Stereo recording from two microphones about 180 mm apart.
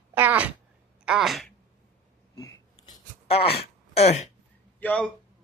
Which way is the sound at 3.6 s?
35° left (ahead or behind).